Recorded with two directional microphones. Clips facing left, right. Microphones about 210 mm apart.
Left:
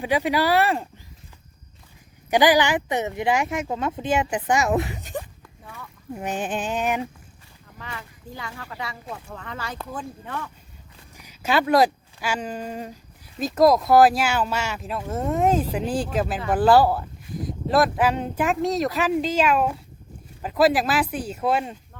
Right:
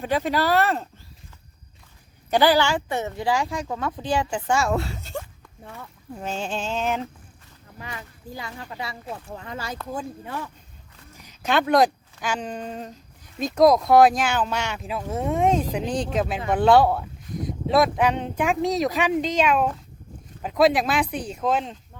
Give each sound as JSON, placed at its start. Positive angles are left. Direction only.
{"t": 0.0, "sound": "female singing", "side_deg": 10}
{"t": 2.3, "sound": "speech", "side_deg": 15}
{"t": 6.1, "sound": "female singing", "side_deg": 15}
{"t": 7.8, "sound": "speech", "side_deg": -15}
{"t": 8.4, "sound": "a woman's voice", "side_deg": -25}
{"t": 11.1, "sound": "speech", "side_deg": 10}